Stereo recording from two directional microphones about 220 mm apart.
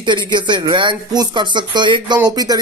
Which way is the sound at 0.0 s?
20° right (ahead or behind).